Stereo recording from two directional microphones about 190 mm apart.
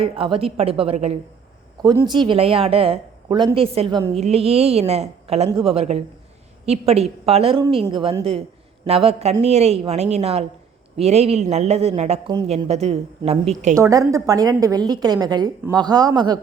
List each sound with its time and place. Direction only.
0.0 s a woman's voice: 30° right (ahead or behind)
13.7 s a woman's voice: 15° right (ahead or behind)